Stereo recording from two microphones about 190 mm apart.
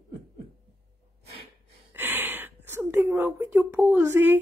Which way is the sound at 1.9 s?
10° right (ahead or behind).